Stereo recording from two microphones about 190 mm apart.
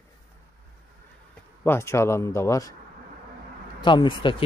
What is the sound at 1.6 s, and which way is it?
Speech, 10° left (ahead or behind).